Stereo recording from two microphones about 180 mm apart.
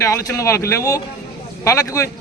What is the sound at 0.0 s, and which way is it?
A man's voice, 15° left (ahead or behind).